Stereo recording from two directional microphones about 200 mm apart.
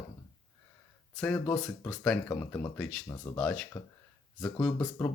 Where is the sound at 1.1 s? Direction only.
5° left (ahead or behind).